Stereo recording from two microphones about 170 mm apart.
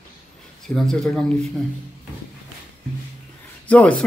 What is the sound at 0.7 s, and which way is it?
Speech, centre (ahead or behind).